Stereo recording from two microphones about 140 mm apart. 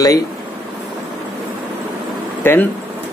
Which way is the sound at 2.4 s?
15° left (ahead or behind).